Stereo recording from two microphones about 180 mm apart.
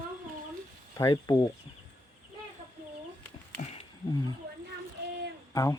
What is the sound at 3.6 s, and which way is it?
Roaring cats, 35° left (ahead or behind).